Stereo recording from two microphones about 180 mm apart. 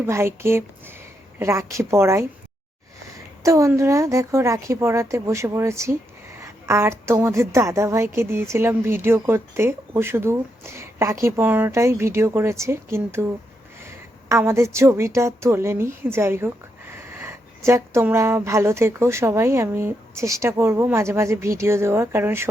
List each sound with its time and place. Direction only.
0.0 s a woman's voice: 15° right (ahead or behind)
3.4 s a woman's voice: 15° right (ahead or behind)
14.3 s a woman's voice: 15° right (ahead or behind)